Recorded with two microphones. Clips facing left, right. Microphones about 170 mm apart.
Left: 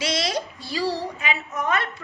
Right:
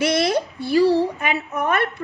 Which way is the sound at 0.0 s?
55° right (ahead or behind).